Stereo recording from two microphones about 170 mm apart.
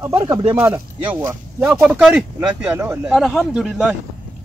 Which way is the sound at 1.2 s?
10° right (ahead or behind).